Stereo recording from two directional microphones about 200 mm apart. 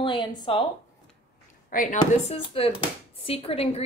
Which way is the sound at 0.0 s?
20° left (ahead or behind).